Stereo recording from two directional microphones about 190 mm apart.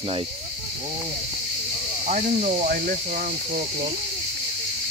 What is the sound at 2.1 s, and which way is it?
Speech, 40° right (ahead or behind).